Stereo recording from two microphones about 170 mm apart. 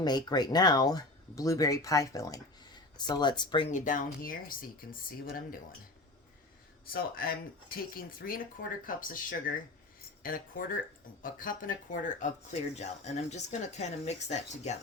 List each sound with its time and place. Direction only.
0.0 s speech: 25° left (ahead or behind)
3.7 s speech: 50° left (ahead or behind)
6.9 s speech: 60° left (ahead or behind); by 14.8 s 40° left (ahead or behind)